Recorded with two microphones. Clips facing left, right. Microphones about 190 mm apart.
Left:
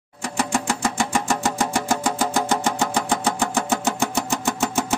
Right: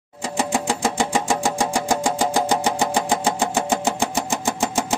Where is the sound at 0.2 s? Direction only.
20° right (ahead or behind).